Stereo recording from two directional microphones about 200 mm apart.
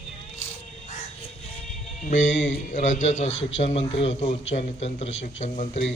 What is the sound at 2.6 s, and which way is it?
Speech, 35° left (ahead or behind).